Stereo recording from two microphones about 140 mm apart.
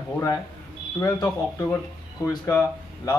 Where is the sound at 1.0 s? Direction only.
20° left (ahead or behind).